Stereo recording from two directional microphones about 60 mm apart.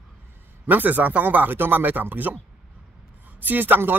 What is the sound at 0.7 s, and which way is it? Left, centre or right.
Speech, right.